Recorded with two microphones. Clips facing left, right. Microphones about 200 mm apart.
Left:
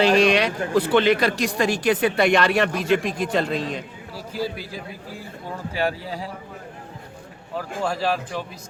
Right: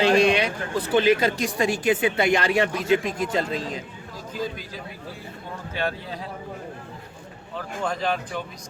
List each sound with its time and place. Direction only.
0.0 s speech: 75° left (ahead or behind)
4.4 s a man's voice: 10° left (ahead or behind)
7.9 s a man's voice: 5° left (ahead or behind)